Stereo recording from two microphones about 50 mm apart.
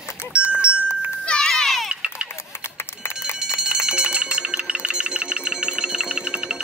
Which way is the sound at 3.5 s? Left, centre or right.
Centre.